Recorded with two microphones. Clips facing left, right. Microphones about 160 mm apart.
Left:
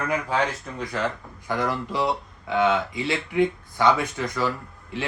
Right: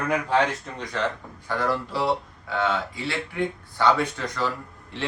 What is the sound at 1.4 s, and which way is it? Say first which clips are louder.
Speech: even; 15° left (ahead or behind).